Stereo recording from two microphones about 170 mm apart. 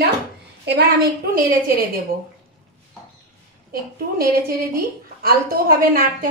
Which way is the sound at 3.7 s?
60° right (ahead or behind).